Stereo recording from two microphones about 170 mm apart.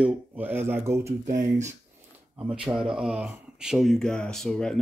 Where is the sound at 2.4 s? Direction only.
5° right (ahead or behind).